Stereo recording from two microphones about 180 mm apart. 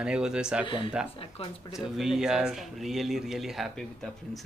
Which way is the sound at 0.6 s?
25° left (ahead or behind).